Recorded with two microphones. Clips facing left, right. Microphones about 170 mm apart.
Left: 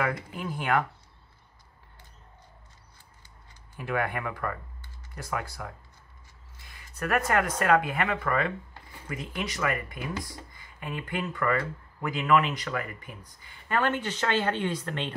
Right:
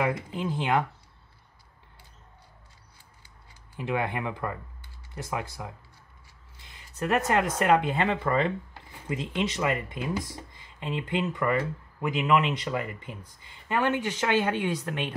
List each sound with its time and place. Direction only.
0.0 s speech: 25° right (ahead or behind)
3.8 s speech: 20° right (ahead or behind)